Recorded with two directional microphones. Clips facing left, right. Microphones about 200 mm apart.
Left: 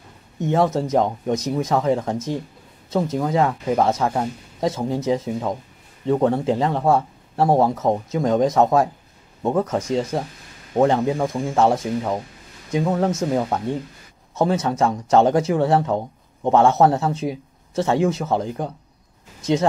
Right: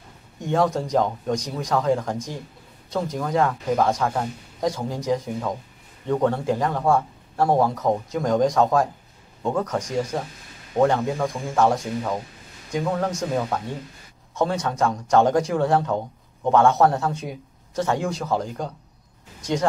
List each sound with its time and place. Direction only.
0.4 s speech: 25° left (ahead or behind)
10.8 s speech: 20° left (ahead or behind)